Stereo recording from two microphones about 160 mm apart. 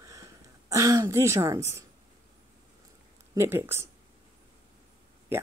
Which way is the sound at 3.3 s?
15° right (ahead or behind).